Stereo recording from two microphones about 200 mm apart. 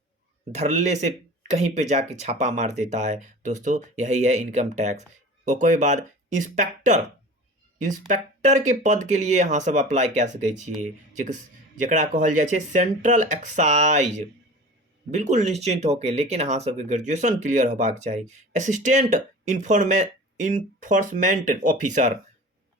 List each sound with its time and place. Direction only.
0.5 s speech: 35° right (ahead or behind)